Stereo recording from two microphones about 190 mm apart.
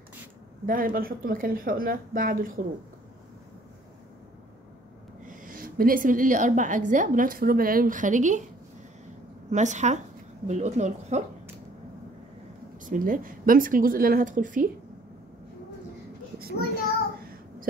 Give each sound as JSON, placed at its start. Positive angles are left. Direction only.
{"t": 0.7, "sound": "a woman's voice", "side_deg": -45}
{"t": 5.2, "sound": "a woman's voice", "side_deg": -45}
{"t": 9.5, "sound": "speech", "side_deg": -40}
{"t": 12.8, "sound": "a woman's voice", "side_deg": -45}
{"t": 17.2, "sound": "child singing", "side_deg": -50}